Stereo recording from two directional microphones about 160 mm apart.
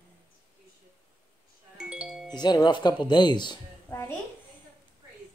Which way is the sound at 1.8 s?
5° right (ahead or behind).